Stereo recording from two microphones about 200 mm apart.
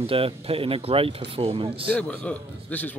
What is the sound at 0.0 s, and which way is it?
Speech, 30° right (ahead or behind).